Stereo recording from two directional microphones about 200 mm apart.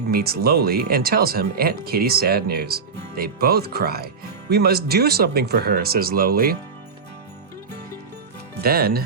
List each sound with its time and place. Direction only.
0.1 s speech: 50° right (ahead or behind)
8.5 s speech: 50° right (ahead or behind)